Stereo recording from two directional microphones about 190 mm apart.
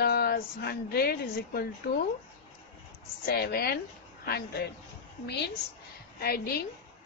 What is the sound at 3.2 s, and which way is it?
Speech, 55° left (ahead or behind).